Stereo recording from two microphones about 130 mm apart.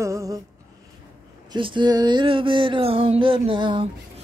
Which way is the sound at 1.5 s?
35° right (ahead or behind).